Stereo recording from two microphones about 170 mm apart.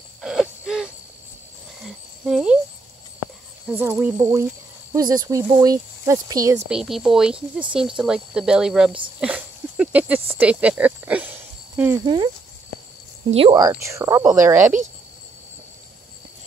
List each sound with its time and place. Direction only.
0.2 s owl: centre (ahead or behind)
2.2 s speech: 5° right (ahead or behind)
3.7 s speech: 10° right (ahead or behind)
6.7 s speech: 5° right (ahead or behind)
9.2 s a sound: 5° right (ahead or behind)
10.3 s speech: 10° right (ahead or behind)
12.0 s speech: 25° right (ahead or behind)
13.3 s a woman's voice: 35° right (ahead or behind)
13.6 s speech: 20° right (ahead or behind)